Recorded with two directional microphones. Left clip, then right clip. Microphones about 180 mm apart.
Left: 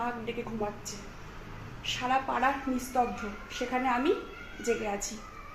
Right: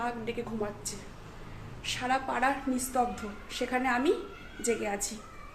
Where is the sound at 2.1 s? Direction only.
5° right (ahead or behind).